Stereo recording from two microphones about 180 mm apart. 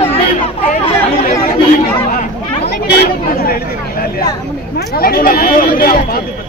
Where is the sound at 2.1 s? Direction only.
60° left (ahead or behind).